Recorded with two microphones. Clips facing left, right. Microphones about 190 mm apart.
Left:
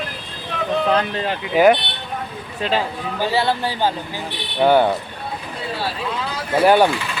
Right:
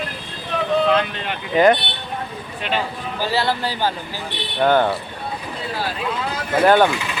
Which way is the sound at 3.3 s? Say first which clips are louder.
Left 1 dB; 20° left (ahead or behind).